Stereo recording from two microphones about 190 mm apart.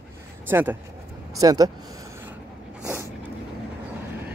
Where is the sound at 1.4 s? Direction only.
20° right (ahead or behind).